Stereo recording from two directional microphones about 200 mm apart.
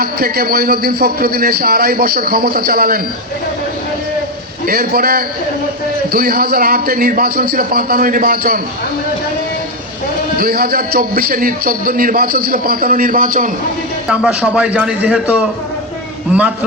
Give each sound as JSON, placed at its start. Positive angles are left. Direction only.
{"t": 0.0, "sound": "a man's voice", "side_deg": -50}
{"t": 4.6, "sound": "a man's voice", "side_deg": -50}
{"t": 10.3, "sound": "a man's voice", "side_deg": -50}
{"t": 14.1, "sound": "a man's voice", "side_deg": -5}